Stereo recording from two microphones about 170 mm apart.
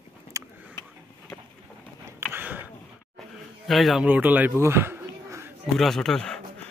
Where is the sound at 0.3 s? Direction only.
20° right (ahead or behind).